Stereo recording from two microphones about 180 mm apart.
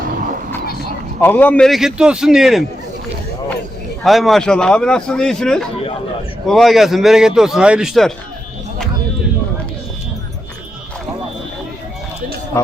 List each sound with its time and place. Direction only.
1.2 s speech: 10° left (ahead or behind)
4.0 s speech: centre (ahead or behind)
12.5 s speech: 15° left (ahead or behind)